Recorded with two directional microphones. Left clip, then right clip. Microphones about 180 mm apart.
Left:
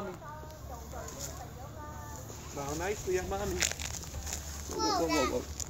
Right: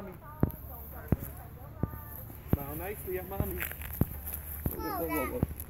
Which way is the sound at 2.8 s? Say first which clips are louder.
Left 5 dB; 35° right (ahead or behind).